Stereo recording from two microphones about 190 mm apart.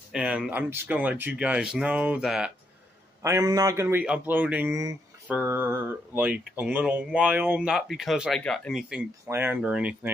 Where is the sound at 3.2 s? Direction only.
15° right (ahead or behind).